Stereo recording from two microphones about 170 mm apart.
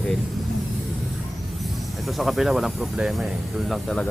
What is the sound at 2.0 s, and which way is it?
Speech, centre (ahead or behind).